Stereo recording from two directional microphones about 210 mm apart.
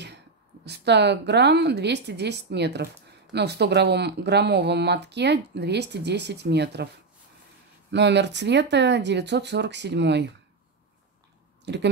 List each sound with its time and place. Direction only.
0.7 s speech: 55° right (ahead or behind)
7.9 s speech: 55° right (ahead or behind)
11.6 s speech: 55° right (ahead or behind)